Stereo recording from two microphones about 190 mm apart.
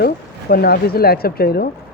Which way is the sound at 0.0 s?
55° left (ahead or behind).